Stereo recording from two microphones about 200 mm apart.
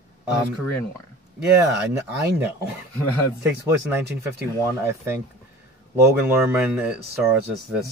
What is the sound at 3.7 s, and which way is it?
Speech, 15° right (ahead or behind).